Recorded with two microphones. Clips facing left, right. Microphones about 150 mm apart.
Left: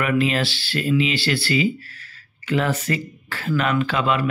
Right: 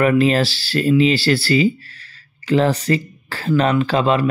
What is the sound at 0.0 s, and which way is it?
Speech, 35° right (ahead or behind).